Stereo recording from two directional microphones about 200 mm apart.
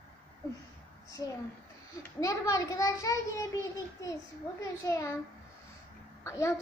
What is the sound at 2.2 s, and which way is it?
Speech, 15° left (ahead or behind).